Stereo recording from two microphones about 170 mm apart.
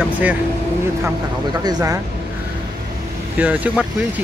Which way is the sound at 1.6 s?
20° right (ahead or behind).